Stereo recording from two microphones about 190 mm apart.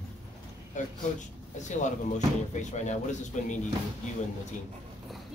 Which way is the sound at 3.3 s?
40° left (ahead or behind).